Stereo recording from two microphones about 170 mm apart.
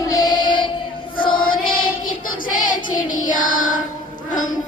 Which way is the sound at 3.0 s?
50° left (ahead or behind).